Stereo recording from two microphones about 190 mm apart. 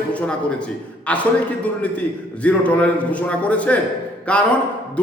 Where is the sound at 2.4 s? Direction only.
5° left (ahead or behind).